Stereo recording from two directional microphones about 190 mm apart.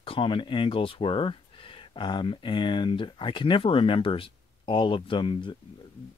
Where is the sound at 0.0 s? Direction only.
30° left (ahead or behind).